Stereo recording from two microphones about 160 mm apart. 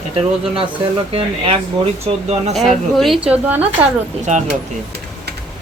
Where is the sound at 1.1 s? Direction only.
35° right (ahead or behind).